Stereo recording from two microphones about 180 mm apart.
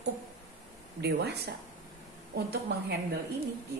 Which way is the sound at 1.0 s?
65° right (ahead or behind).